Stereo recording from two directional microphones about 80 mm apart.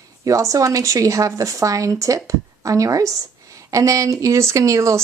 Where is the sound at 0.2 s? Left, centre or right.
Right.